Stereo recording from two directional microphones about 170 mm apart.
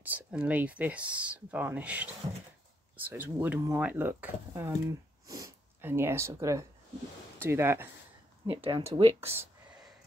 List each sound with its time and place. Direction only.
0.0 s speech: 10° right (ahead or behind)
3.1 s speech: 10° right (ahead or behind)
8.5 s speech: 30° right (ahead or behind)
9.4 s a sound: 5° right (ahead or behind)